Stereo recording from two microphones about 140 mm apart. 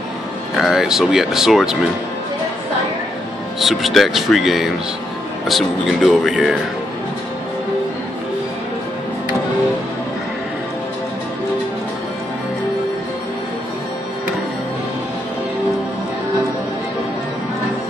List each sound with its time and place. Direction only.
0.6 s speech: centre (ahead or behind)
3.5 s speech: centre (ahead or behind)